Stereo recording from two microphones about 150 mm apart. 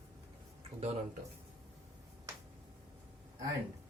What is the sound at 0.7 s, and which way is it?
Speech, 45° right (ahead or behind).